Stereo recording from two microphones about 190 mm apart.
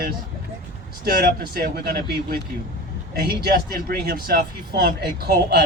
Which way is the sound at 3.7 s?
55° right (ahead or behind).